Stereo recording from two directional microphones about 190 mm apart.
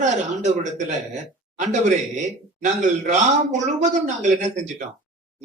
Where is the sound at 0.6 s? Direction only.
40° right (ahead or behind).